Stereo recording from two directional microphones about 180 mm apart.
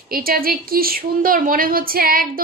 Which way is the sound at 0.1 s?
55° right (ahead or behind).